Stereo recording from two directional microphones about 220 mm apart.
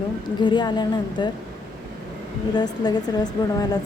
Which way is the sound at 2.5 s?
20° left (ahead or behind).